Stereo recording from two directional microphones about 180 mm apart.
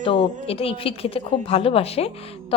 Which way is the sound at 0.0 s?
30° left (ahead or behind).